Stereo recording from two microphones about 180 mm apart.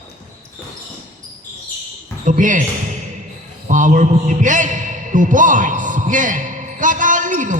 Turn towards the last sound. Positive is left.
turn(degrees=-45)  # may be behind; listen again after turning